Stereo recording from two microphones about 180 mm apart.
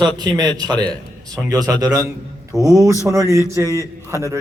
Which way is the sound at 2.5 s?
Centre (ahead or behind).